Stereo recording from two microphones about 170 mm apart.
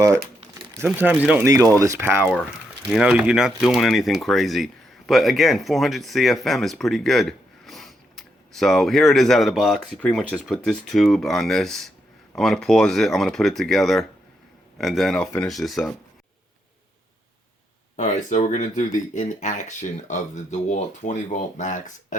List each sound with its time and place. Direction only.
0.9 s speech: 10° right (ahead or behind)
1.5 s speech: 20° right (ahead or behind); by 15.9 s centre (ahead or behind)
17.9 s speech: 45° left (ahead or behind)